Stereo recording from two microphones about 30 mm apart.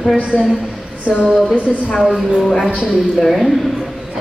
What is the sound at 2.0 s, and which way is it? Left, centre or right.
A woman's voice, centre.